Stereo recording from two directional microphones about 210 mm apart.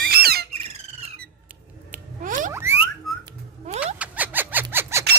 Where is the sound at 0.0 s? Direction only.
45° right (ahead or behind).